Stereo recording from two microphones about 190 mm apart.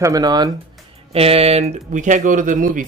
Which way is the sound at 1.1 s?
30° right (ahead or behind).